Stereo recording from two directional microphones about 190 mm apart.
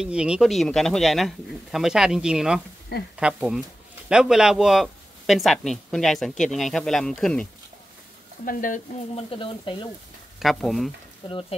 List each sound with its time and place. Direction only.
0.0 s speech: 5° right (ahead or behind)
8.5 s speech: 45° left (ahead or behind)
9.1 s speech: 25° left (ahead or behind)
10.4 s speech: centre (ahead or behind)
11.2 s speech: 25° left (ahead or behind)